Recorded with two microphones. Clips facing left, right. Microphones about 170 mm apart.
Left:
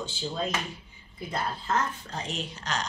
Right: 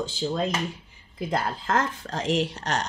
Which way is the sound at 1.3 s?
90° right.